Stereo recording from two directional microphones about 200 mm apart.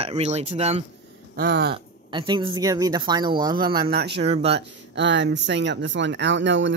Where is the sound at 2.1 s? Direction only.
25° right (ahead or behind).